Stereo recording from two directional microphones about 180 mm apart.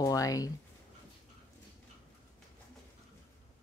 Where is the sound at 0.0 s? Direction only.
20° left (ahead or behind).